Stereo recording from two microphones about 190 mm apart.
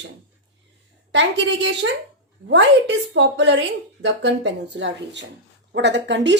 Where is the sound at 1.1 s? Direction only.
70° right (ahead or behind).